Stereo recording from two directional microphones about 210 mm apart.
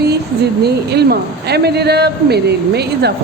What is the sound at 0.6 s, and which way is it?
A man's voice, 50° right (ahead or behind).